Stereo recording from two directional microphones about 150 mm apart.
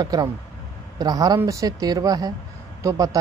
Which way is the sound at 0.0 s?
25° right (ahead or behind).